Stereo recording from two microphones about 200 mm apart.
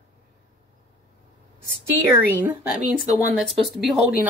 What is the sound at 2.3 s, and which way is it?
Speech, 10° right (ahead or behind).